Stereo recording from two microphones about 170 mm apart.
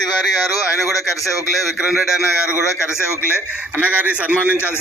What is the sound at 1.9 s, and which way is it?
Speech, centre (ahead or behind).